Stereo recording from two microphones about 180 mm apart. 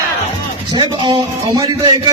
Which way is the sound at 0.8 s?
25° right (ahead or behind).